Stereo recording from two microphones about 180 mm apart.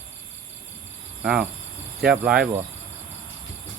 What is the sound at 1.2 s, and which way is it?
Speech, 5° right (ahead or behind).